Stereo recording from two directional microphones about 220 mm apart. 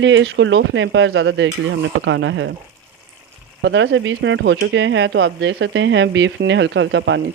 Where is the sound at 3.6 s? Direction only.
55° right (ahead or behind).